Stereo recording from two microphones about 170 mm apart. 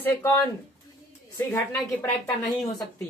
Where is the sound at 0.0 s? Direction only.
10° left (ahead or behind).